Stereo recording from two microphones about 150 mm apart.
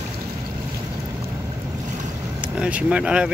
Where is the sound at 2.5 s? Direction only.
10° right (ahead or behind).